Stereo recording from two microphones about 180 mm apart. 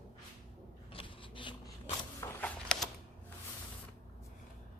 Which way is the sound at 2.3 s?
5° left (ahead or behind).